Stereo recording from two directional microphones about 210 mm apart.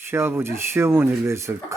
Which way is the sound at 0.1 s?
10° right (ahead or behind).